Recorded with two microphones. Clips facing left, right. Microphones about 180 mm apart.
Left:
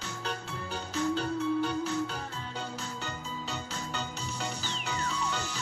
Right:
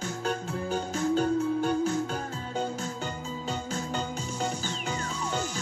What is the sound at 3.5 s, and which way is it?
Music, 45° right (ahead or behind).